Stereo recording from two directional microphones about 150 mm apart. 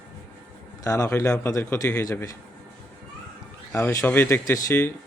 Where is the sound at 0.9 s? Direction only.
20° left (ahead or behind).